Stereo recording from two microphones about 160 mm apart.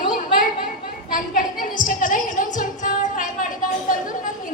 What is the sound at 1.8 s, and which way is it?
Music, 55° left (ahead or behind).